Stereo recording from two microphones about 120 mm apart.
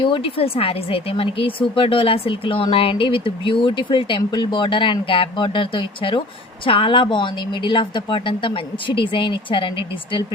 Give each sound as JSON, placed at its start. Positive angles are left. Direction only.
{"t": 0.0, "sound": "speech", "side_deg": 50}